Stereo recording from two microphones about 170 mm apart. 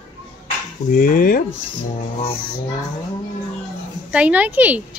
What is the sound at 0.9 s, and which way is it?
Stir, 55° left (ahead or behind).